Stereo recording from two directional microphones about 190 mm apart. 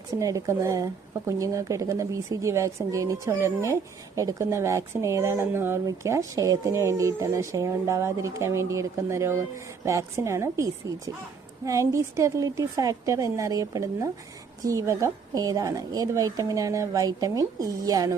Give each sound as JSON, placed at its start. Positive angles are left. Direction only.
{"t": 0.2, "sound": "speech", "side_deg": -15}